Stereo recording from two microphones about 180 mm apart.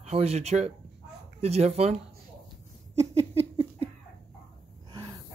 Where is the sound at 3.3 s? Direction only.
30° right (ahead or behind).